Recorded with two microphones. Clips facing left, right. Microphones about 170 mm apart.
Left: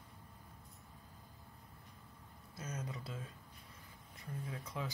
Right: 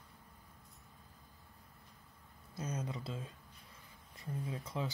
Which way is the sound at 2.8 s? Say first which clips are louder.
Right 3 dB; 25° right (ahead or behind).